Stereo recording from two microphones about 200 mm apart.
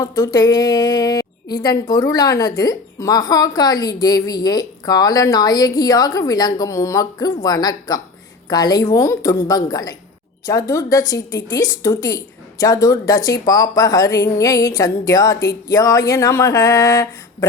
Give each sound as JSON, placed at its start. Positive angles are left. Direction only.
{"t": 0.0, "sound": "a woman's voice", "side_deg": 15}